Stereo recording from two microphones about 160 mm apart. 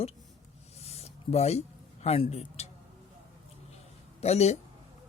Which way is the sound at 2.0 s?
40° left (ahead or behind).